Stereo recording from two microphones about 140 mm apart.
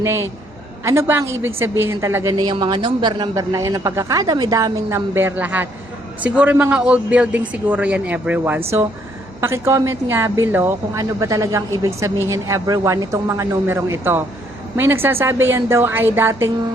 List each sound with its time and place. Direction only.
0.0 s a man's voice: 15° right (ahead or behind)
2.5 s a man's voice: 35° right (ahead or behind); by 16.5 s 15° right (ahead or behind)